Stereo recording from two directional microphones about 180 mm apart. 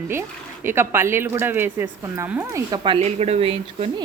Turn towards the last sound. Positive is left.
turn(degrees=-35)  # may be behind; listen again after turning